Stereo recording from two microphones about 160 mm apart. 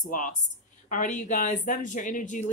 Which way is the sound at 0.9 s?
55° left (ahead or behind).